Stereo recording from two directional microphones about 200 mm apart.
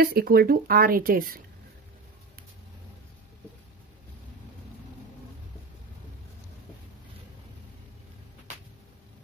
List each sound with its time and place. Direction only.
0.0 s speech: 50° right (ahead or behind)